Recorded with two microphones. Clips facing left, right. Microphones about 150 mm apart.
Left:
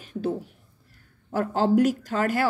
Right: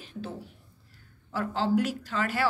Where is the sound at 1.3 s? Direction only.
45° left (ahead or behind).